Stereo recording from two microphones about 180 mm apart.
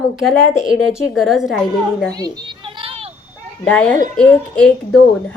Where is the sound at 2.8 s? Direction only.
30° right (ahead or behind).